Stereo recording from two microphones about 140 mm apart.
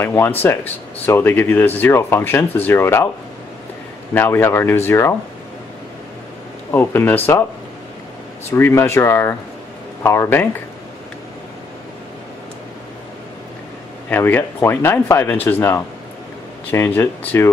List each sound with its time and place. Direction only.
0.0 s speech: 15° left (ahead or behind)
4.1 s speech: 15° left (ahead or behind)
6.7 s speech: 15° left (ahead or behind)
8.5 s speech: 15° left (ahead or behind)
14.1 s speech: 15° left (ahead or behind)